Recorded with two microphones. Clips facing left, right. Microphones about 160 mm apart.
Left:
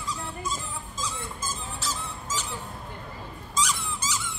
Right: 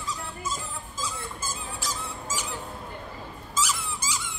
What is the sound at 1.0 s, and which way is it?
Dog, 10° right (ahead or behind).